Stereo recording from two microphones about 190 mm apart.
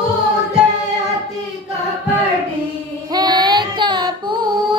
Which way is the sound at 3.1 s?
20° right (ahead or behind).